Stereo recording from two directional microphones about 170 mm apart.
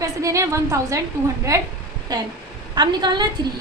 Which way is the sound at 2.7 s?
25° right (ahead or behind).